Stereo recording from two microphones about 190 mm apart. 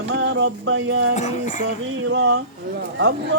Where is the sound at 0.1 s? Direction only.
80° right.